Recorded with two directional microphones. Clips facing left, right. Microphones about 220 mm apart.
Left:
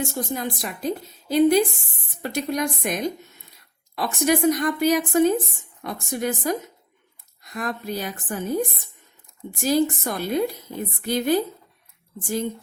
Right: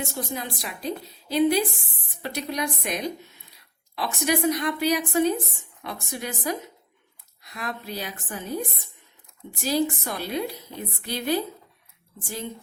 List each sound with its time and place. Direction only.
0.0 s a woman's voice: 45° left (ahead or behind)
9.5 s a woman's voice: 50° left (ahead or behind)